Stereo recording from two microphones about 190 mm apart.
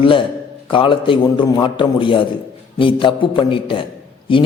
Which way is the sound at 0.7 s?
25° left (ahead or behind).